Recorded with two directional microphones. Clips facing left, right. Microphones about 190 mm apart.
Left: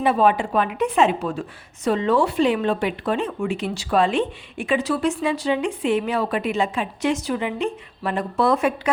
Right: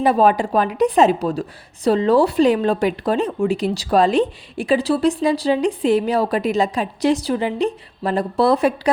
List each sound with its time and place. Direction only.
0.0 s a woman's voice: 40° right (ahead or behind)